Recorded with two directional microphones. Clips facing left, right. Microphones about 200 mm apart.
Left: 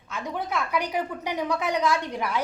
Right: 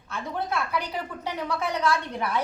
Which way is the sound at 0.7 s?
15° left (ahead or behind).